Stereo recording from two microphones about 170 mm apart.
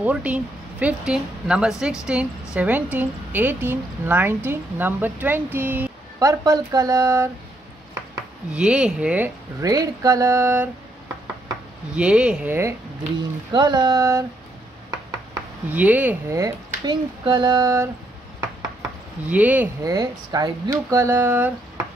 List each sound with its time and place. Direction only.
0.0 s a woman's voice: 10° right (ahead or behind)
8.5 s a woman's voice: 5° right (ahead or behind)
11.9 s a woman's voice: 5° right (ahead or behind)
13.5 s speech: 25° right (ahead or behind)
15.0 s a sound: 15° right (ahead or behind)
17.2 s speech: 25° right (ahead or behind)
18.4 s a sound: 10° right (ahead or behind)
19.8 s speech: 20° right (ahead or behind)